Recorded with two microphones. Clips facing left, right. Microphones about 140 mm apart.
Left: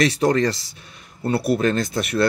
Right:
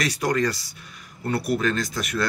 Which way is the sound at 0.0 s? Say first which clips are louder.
Left 5 dB; 25° left (ahead or behind).